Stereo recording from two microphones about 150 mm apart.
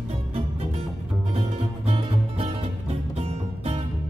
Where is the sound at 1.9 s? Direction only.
45° right (ahead or behind).